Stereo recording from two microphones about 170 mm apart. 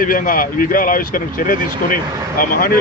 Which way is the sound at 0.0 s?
55° left (ahead or behind).